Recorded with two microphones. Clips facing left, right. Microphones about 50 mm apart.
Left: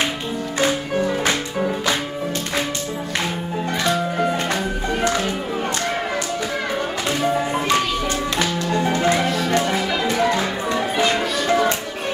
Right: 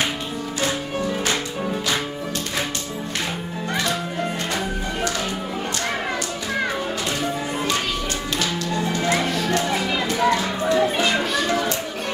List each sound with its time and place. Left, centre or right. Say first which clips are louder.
0.6 s music: left 5 dB; left
7.3 s music: left 5 dB; left
10.8 s music: left 2 dB; centre
11.4 s music: left 4 dB; left